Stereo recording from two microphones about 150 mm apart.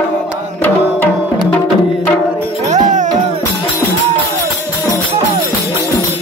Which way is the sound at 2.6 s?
50° right (ahead or behind).